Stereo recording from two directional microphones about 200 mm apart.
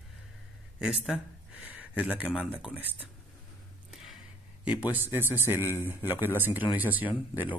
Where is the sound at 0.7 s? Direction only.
5° right (ahead or behind).